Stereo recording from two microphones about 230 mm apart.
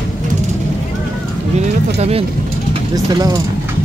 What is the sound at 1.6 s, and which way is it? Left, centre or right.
Speech, right.